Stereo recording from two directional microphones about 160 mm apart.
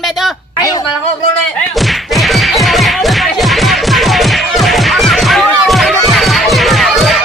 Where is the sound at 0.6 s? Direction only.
20° left (ahead or behind).